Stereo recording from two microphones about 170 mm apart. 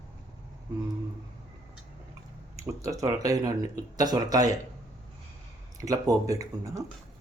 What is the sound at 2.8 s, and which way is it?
Speech, 20° right (ahead or behind).